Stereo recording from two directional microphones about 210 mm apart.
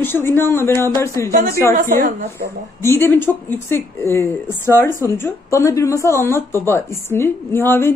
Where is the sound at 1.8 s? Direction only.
35° right (ahead or behind).